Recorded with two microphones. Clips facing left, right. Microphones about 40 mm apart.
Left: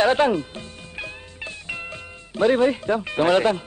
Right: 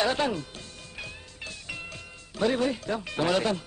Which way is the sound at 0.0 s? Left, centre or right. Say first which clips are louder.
Left 8 dB; left.